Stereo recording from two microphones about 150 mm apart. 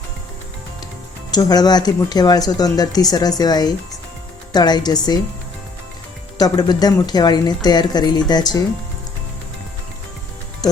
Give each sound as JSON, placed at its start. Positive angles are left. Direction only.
{"t": 1.3, "sound": "speech", "side_deg": 25}
{"t": 6.3, "sound": "speech", "side_deg": 25}